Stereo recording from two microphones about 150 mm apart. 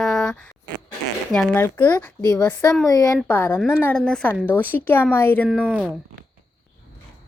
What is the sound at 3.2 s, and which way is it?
Speech, 10° left (ahead or behind).